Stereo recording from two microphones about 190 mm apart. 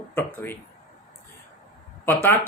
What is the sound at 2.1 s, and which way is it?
Speech, 10° left (ahead or behind).